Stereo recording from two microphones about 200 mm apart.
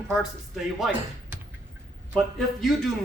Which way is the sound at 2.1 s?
Centre (ahead or behind).